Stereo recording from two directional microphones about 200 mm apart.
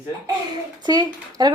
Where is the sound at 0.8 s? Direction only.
20° right (ahead or behind).